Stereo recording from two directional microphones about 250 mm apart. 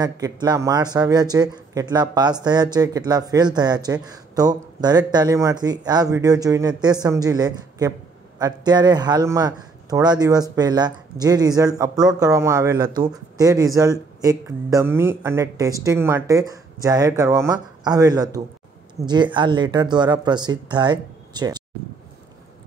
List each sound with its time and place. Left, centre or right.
0.0 s speech: centre